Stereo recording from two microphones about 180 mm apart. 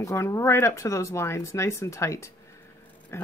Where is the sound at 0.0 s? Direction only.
15° left (ahead or behind).